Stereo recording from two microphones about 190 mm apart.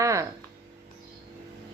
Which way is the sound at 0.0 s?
15° right (ahead or behind).